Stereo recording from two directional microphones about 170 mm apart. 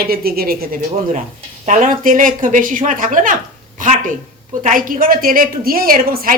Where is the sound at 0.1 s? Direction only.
60° right (ahead or behind).